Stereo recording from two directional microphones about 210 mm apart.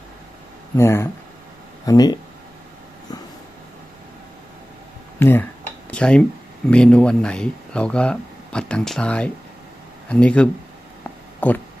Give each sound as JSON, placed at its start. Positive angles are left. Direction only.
{"t": 0.8, "sound": "speech", "side_deg": 10}
{"t": 5.2, "sound": "speech", "side_deg": 10}
{"t": 11.3, "sound": "a sound", "side_deg": 10}